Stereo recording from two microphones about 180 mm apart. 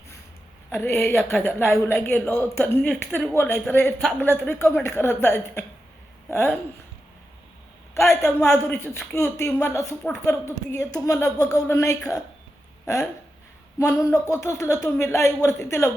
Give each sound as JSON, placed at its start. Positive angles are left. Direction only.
{"t": 0.7, "sound": "speech", "side_deg": 15}
{"t": 8.2, "sound": "speech", "side_deg": 15}
{"t": 13.7, "sound": "speech", "side_deg": 15}